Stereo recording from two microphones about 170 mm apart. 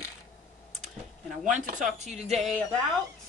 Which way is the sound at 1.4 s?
45° right (ahead or behind).